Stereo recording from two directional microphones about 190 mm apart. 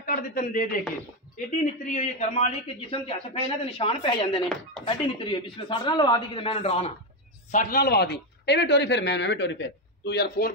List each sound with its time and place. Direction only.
0.0 s a man's voice: 50° left (ahead or behind); by 6.9 s 30° left (ahead or behind)
7.5 s a man's voice: 50° left (ahead or behind)